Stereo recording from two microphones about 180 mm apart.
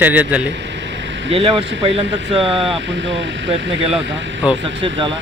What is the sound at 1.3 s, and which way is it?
Speech, 30° right (ahead or behind).